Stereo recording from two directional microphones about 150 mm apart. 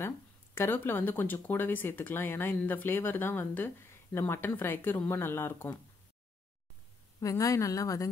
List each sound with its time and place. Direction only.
0.6 s speech: 15° left (ahead or behind)
7.2 s a woman's voice: 20° left (ahead or behind)